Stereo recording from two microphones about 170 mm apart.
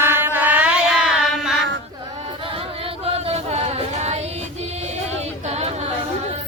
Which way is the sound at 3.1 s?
35° right (ahead or behind).